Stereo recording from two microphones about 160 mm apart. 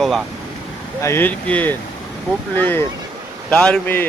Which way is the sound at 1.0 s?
15° left (ahead or behind).